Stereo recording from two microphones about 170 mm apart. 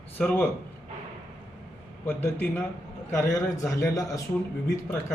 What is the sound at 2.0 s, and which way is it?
Speech, 10° left (ahead or behind).